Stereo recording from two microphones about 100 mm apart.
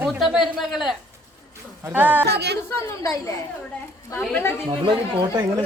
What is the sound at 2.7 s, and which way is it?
Speech, 35° left (ahead or behind).